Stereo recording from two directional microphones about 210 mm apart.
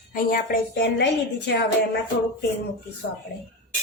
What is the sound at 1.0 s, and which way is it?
Speech, 55° left (ahead or behind).